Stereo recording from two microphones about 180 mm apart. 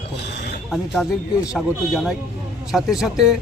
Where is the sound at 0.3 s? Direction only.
70° left (ahead or behind).